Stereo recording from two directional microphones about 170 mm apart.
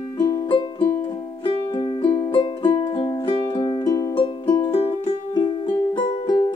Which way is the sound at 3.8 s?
20° left (ahead or behind).